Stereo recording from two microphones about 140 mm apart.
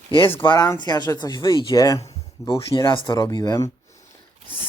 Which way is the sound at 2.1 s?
25° left (ahead or behind).